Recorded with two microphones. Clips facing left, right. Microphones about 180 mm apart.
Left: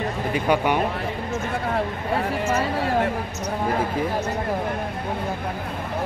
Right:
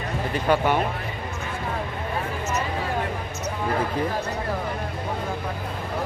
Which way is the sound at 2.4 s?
55° left (ahead or behind).